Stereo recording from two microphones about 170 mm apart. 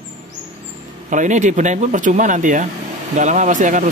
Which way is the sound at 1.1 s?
45° right (ahead or behind).